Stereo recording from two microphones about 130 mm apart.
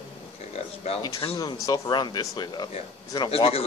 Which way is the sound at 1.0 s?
35° left (ahead or behind).